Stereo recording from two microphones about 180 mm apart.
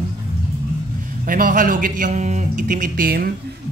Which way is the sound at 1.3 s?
50° right (ahead or behind).